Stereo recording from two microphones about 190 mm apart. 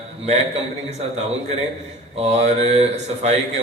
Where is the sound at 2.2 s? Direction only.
35° right (ahead or behind).